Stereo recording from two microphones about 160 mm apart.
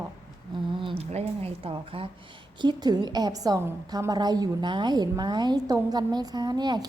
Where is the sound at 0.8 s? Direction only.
35° right (ahead or behind).